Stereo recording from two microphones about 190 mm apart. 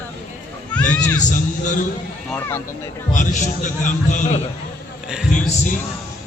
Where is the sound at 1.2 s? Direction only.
40° left (ahead or behind).